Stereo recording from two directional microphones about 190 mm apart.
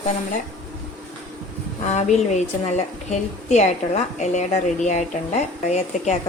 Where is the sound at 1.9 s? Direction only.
35° left (ahead or behind).